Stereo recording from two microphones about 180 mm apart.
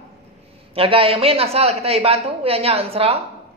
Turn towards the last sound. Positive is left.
turn(degrees=-35)  # may be behind; listen again after turning